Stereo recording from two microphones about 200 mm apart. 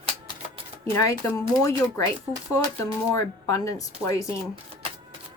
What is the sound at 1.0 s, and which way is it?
A woman's voice, 15° left (ahead or behind).